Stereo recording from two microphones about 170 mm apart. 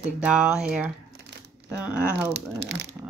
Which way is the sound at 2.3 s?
75° right (ahead or behind).